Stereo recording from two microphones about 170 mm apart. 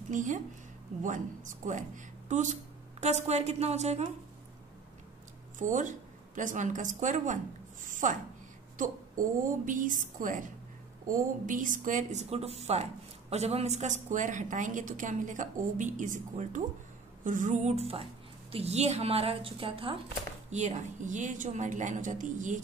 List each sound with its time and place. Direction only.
0.1 s a woman's voice: 50° right (ahead or behind)
5.6 s a woman's voice: 50° right (ahead or behind); by 20.0 s 30° right (ahead or behind)
20.4 s a woman's voice: 40° right (ahead or behind)